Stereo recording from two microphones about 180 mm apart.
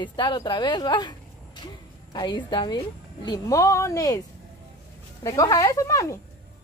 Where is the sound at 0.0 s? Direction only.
25° left (ahead or behind).